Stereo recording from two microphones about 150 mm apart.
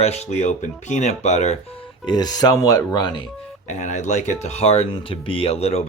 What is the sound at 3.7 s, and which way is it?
Speech, 55° left (ahead or behind).